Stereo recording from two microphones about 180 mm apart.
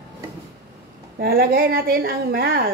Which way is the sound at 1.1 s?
55° right (ahead or behind).